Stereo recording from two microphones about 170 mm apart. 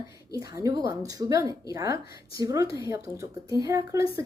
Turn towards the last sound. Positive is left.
turn(degrees=-20)  # may be behind; listen again after turning